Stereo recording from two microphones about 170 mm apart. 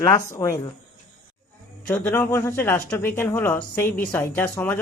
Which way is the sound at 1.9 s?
15° left (ahead or behind).